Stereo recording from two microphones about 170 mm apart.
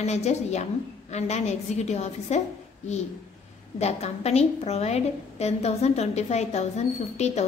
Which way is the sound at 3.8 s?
40° left (ahead or behind).